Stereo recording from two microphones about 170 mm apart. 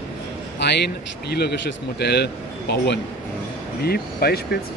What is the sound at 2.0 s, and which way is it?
Speech, 75° left (ahead or behind).